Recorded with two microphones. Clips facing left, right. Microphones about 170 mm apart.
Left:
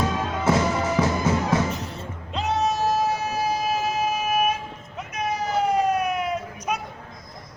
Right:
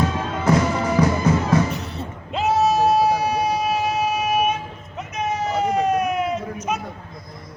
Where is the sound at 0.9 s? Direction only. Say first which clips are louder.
Right 6 dB; centre (ahead or behind).